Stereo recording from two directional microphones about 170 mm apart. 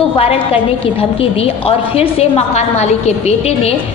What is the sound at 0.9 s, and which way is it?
A woman's voice, 35° left (ahead or behind).